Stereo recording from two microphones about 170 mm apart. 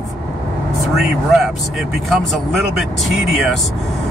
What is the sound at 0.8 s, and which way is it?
Speech, centre (ahead or behind).